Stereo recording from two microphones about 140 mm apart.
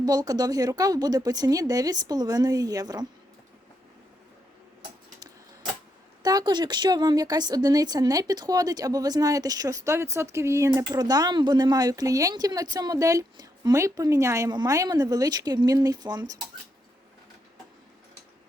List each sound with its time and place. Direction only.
0.0 s speech: 30° right (ahead or behind)
6.2 s speech: 30° right (ahead or behind)